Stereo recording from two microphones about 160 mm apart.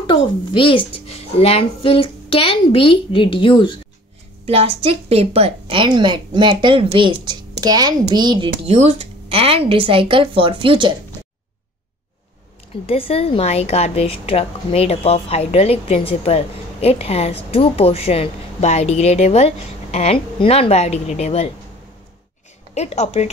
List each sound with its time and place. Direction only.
0.0 s a woman's voice: 30° left (ahead or behind)
4.5 s a woman's voice: 40° right (ahead or behind)
12.8 s a woman's voice: 40° left (ahead or behind)
22.8 s speech: 45° left (ahead or behind)